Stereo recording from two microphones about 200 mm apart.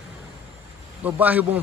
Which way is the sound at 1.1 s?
10° right (ahead or behind).